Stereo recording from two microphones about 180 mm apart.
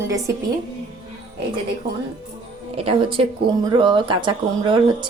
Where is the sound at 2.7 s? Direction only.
30° right (ahead or behind).